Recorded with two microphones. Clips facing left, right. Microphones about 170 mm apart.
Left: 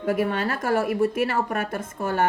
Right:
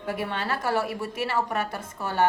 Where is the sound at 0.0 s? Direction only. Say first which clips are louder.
Left 7 dB; 45° left (ahead or behind).